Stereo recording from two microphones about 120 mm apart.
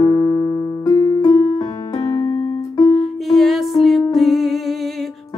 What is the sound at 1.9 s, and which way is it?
Keyboard, 30° left (ahead or behind).